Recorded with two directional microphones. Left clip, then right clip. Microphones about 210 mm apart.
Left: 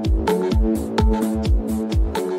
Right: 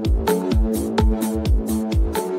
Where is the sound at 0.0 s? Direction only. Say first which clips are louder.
Left 1 dB; centre (ahead or behind).